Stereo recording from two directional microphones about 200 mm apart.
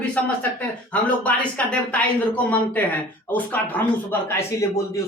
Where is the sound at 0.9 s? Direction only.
5° left (ahead or behind).